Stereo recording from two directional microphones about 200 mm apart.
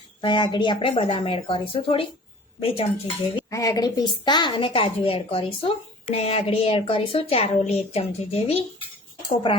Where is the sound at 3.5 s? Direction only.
15° left (ahead or behind).